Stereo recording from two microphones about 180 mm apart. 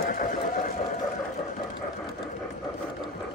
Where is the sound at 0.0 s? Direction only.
50° left (ahead or behind).